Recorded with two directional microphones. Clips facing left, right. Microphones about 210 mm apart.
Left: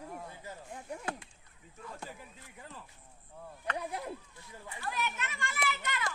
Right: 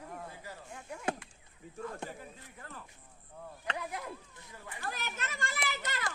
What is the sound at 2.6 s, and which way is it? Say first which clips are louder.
Speech: even; 15° left (ahead or behind).